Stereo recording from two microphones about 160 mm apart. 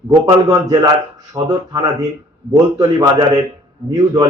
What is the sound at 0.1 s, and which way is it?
A man's voice, 25° right (ahead or behind).